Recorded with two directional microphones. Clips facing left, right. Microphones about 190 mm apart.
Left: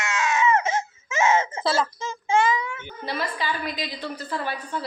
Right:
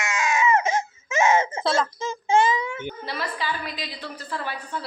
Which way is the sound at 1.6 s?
Centre (ahead or behind).